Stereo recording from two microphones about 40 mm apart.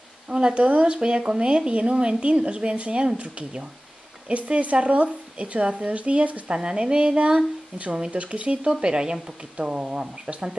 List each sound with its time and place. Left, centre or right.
0.3 s speech: right